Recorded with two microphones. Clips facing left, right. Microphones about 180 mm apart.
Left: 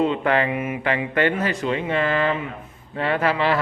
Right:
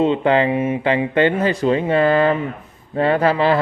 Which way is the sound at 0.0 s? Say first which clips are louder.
Right 4 dB; 25° right (ahead or behind).